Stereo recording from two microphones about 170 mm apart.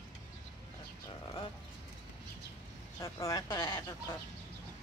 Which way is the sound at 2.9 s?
20° left (ahead or behind).